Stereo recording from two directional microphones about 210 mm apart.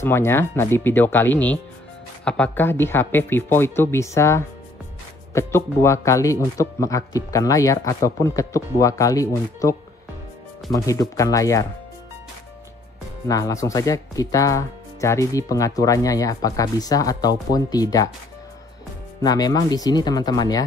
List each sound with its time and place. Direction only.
0.0 s speech: 10° left (ahead or behind)
13.3 s speech: 15° left (ahead or behind)
19.2 s speech: 20° left (ahead or behind)